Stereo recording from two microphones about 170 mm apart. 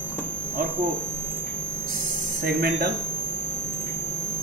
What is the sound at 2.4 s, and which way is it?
Speech, 65° right (ahead or behind).